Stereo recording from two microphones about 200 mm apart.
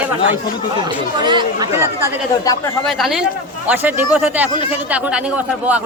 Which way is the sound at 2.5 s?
15° left (ahead or behind).